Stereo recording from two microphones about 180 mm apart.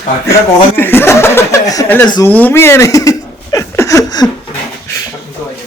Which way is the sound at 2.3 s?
10° left (ahead or behind).